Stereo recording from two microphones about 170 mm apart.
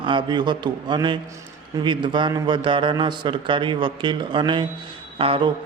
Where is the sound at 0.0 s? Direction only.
30° right (ahead or behind).